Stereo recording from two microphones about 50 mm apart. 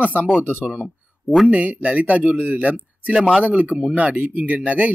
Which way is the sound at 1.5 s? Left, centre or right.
Right.